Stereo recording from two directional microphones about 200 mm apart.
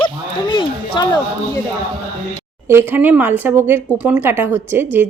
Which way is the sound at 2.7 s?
10° right (ahead or behind).